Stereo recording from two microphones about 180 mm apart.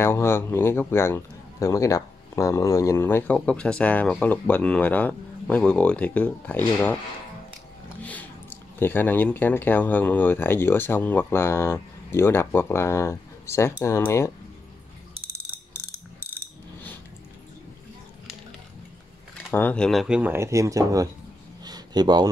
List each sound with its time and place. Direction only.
0.0 s a man's voice: 15° left (ahead or behind)
8.0 s a man's voice: 10° left (ahead or behind)
19.3 s speech: 10° left (ahead or behind); by 21.1 s 20° right (ahead or behind)
21.6 s a sound: 20° right (ahead or behind)